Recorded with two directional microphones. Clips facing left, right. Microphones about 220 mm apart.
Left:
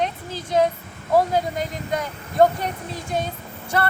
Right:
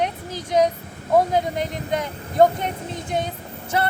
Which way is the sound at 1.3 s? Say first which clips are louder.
Right 1 dB; 20° right (ahead or behind).